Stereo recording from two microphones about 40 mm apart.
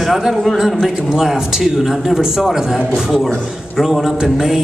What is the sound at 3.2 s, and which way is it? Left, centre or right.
Speech, centre.